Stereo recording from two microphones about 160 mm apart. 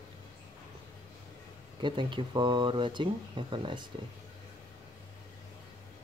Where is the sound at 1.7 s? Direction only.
30° right (ahead or behind).